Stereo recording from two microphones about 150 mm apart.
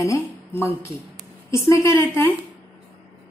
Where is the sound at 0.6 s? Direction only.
15° left (ahead or behind).